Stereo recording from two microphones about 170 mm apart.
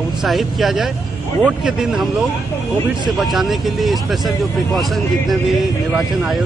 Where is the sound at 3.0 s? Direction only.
Centre (ahead or behind).